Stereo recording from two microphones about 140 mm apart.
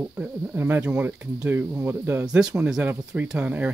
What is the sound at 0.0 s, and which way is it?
Speech, 15° right (ahead or behind).